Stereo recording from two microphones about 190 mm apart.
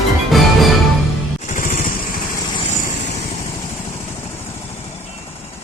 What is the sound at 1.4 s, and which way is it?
Music, 45° left (ahead or behind).